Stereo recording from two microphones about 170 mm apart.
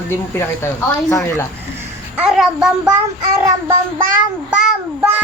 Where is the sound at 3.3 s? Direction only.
15° right (ahead or behind).